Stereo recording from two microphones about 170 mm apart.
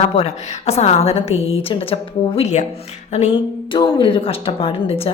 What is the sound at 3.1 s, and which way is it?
Music, 40° left (ahead or behind).